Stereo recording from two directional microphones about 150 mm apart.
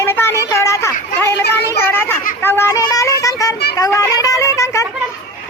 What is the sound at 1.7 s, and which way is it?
Children playing, 15° left (ahead or behind).